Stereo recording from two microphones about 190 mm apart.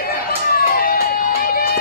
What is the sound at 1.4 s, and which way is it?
Music, 50° left (ahead or behind).